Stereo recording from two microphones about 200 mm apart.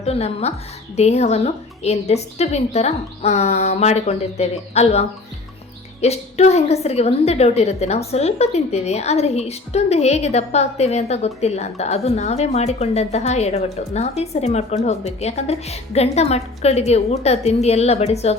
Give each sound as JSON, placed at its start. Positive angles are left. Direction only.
{"t": 0.0, "sound": "a woman's voice", "side_deg": 30}